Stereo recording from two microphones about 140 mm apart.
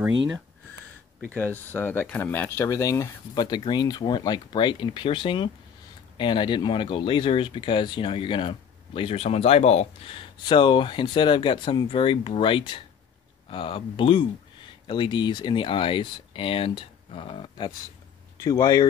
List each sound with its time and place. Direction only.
1.3 s speech: 15° left (ahead or behind)